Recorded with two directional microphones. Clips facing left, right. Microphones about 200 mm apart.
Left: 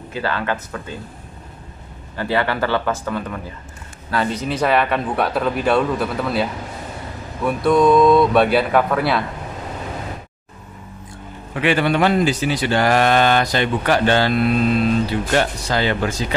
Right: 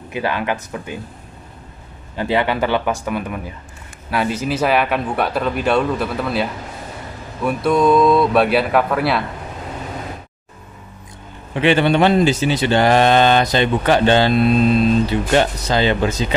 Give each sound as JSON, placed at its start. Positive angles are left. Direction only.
{"t": 0.1, "sound": "speech", "side_deg": -15}
{"t": 2.1, "sound": "speech", "side_deg": -20}
{"t": 11.5, "sound": "speech", "side_deg": -25}